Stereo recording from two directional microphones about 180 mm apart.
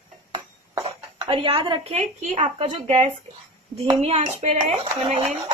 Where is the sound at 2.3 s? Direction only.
40° right (ahead or behind).